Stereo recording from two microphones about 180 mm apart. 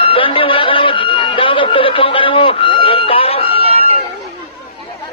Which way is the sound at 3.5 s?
35° right (ahead or behind).